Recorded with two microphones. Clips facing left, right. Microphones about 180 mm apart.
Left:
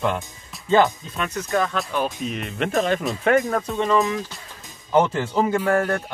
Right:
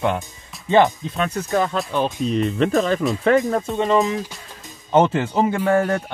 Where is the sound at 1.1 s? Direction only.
30° right (ahead or behind).